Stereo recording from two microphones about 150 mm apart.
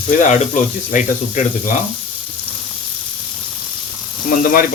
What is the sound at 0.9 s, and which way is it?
Speech, 60° left (ahead or behind).